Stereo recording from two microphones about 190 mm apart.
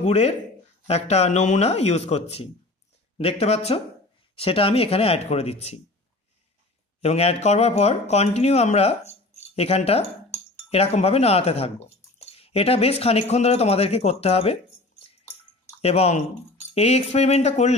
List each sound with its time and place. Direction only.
0.0 s speech: 35° left (ahead or behind)
7.0 s speech: 35° left (ahead or behind)
15.8 s speech: 35° left (ahead or behind)